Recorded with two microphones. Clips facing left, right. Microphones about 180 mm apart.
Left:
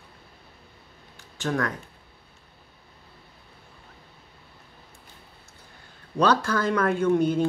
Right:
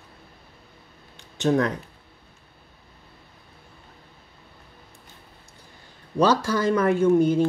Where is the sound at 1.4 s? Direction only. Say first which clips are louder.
Right 6 dB; 25° right (ahead or behind).